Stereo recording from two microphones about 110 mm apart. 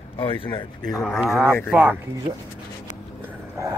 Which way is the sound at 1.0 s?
Centre (ahead or behind).